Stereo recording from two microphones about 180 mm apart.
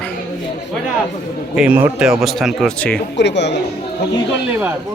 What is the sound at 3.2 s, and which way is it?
Speech, 75° left (ahead or behind).